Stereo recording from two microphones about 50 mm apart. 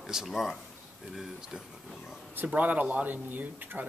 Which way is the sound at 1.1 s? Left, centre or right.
Centre.